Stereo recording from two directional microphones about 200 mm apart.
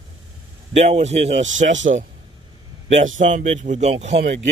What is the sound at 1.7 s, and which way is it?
Speech, 70° right (ahead or behind).